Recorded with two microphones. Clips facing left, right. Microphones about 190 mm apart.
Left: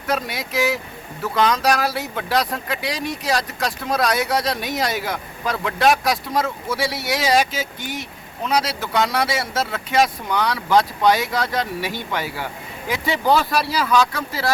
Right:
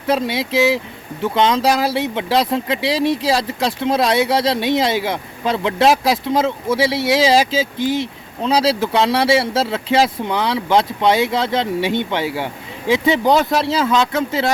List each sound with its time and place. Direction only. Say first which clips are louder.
0.1 s speech: right 6 dB; 25° right (ahead or behind)